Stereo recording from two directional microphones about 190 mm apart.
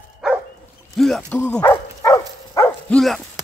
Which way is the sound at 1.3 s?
5° left (ahead or behind).